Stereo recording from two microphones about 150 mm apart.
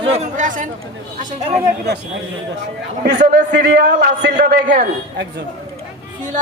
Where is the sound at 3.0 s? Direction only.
90° right.